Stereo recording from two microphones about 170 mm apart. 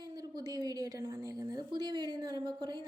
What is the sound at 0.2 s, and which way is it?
A woman's voice, 25° right (ahead or behind).